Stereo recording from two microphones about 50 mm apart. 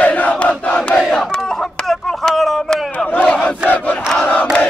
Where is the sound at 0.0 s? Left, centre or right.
Left.